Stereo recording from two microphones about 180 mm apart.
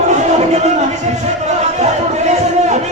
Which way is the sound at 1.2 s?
40° right (ahead or behind).